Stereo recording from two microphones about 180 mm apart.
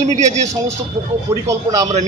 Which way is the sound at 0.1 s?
40° right (ahead or behind).